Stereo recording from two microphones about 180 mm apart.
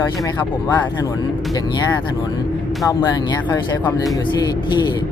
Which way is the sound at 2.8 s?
20° left (ahead or behind).